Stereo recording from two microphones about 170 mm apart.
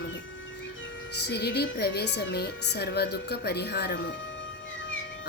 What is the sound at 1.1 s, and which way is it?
Speech, 75° left (ahead or behind).